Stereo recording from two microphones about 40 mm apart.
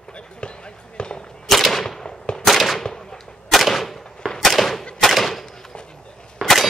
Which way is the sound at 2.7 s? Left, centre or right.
Centre.